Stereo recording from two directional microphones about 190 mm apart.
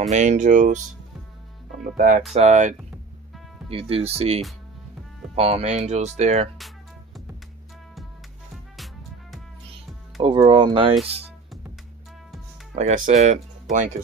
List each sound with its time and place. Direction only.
0.1 s speech: 40° right (ahead or behind)
2.0 s speech: 45° right (ahead or behind)
3.7 s speech: 30° right (ahead or behind)
8.7 s music: centre (ahead or behind)
10.2 s speech: 25° right (ahead or behind)
12.7 s speech: 40° right (ahead or behind)